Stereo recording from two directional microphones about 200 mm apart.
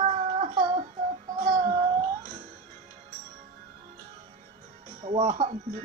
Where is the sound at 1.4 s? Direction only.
40° right (ahead or behind).